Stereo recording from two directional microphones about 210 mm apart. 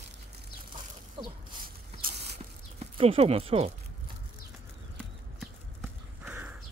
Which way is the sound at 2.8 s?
25° right (ahead or behind).